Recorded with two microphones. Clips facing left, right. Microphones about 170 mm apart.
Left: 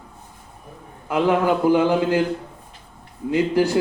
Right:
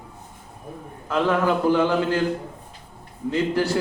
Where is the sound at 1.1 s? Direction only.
15° left (ahead or behind).